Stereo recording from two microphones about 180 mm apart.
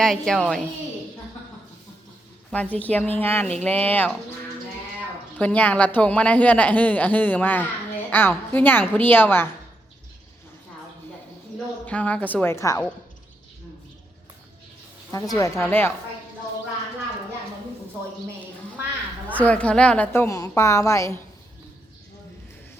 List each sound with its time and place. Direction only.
0.0 s a woman's voice: 5° left (ahead or behind)
2.5 s speech: 5° left (ahead or behind)
5.4 s speech: 10° left (ahead or behind)
11.9 s speech: 5° left (ahead or behind)
15.1 s a woman's voice: 20° left (ahead or behind)
19.3 s speech: 10° left (ahead or behind)